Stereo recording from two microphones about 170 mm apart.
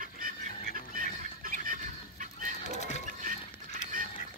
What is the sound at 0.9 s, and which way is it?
Squawk, 50° right (ahead or behind).